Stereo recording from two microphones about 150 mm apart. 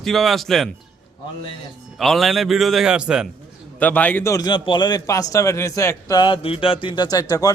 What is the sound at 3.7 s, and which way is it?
A man's voice, 10° left (ahead or behind).